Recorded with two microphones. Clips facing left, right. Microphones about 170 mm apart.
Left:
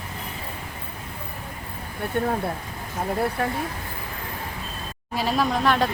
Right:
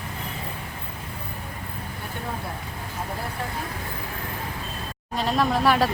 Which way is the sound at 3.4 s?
60° left (ahead or behind).